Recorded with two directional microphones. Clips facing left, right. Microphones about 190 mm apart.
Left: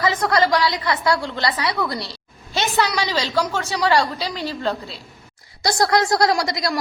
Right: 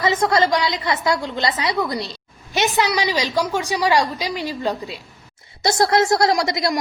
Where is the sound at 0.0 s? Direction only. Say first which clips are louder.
Right 1 dB; 20° right (ahead or behind).